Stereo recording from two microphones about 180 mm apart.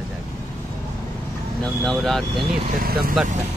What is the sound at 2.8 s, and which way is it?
Speech, 55° right (ahead or behind).